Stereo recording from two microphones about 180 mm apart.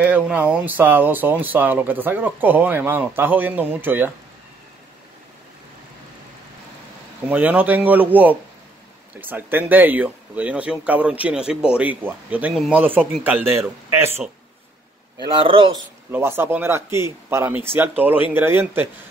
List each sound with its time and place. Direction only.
0.0 s speech: 10° right (ahead or behind)
7.2 s speech: 10° right (ahead or behind)
15.4 s speech: 30° right (ahead or behind)
16.1 s speech: 10° right (ahead or behind)